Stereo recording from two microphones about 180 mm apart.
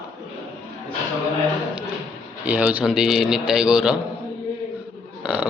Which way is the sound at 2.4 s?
5° right (ahead or behind).